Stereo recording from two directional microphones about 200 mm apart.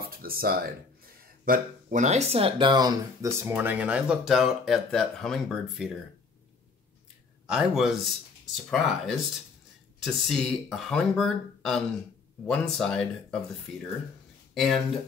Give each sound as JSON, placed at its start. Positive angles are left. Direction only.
{"t": 0.1, "sound": "speech", "side_deg": -45}
{"t": 7.4, "sound": "speech", "side_deg": -5}
{"t": 14.5, "sound": "speech", "side_deg": 0}